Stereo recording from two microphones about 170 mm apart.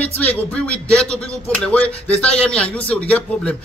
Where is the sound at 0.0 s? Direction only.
10° left (ahead or behind).